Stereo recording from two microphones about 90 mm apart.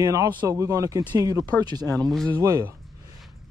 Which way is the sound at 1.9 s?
5° left (ahead or behind).